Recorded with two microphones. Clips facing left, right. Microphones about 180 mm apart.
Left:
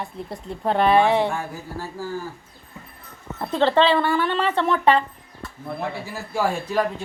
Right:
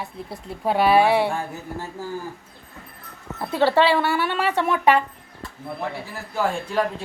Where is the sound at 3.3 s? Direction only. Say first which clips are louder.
Even; 5° right (ahead or behind).